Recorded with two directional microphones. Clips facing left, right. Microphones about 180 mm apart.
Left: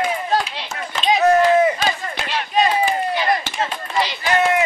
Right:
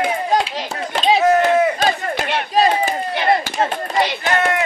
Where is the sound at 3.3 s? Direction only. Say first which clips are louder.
Right 4 dB; 40° right (ahead or behind).